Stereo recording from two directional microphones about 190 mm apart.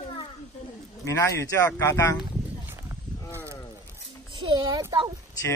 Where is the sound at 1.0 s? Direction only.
15° left (ahead or behind).